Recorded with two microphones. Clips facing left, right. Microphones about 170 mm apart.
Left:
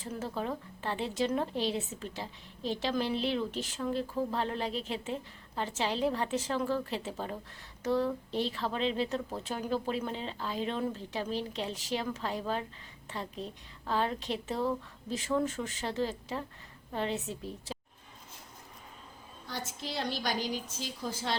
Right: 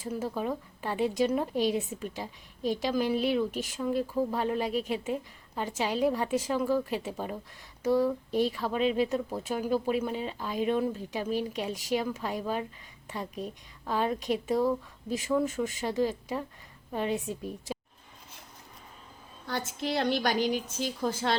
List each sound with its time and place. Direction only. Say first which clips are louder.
0.0 s speech: right 4 dB; 10° right (ahead or behind)
19.5 s a woman's voice: right 7 dB; 60° right (ahead or behind)